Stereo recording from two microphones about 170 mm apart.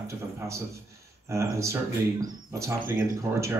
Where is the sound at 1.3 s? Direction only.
15° right (ahead or behind).